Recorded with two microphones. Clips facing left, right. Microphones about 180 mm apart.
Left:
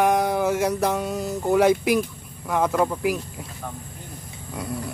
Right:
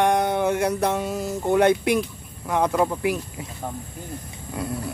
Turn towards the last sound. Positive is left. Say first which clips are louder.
# right 1 dB
turn(degrees=0)  # may be behind; listen again after turning